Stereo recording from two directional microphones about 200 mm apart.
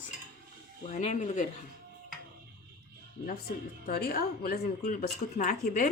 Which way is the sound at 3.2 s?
50° left (ahead or behind).